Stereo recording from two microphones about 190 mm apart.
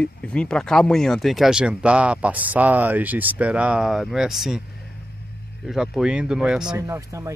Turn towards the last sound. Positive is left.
turn(degrees=-15)  # may be behind; listen again after turning